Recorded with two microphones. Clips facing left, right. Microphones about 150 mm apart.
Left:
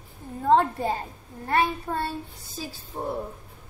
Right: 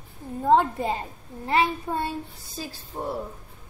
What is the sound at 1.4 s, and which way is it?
A child's voice, 10° right (ahead or behind).